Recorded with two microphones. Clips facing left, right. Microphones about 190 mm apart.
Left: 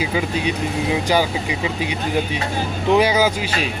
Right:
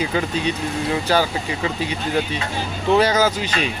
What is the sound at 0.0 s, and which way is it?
Speech, 5° left (ahead or behind).